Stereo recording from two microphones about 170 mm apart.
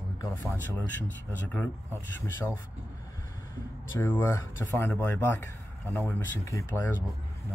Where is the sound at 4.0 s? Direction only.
10° left (ahead or behind).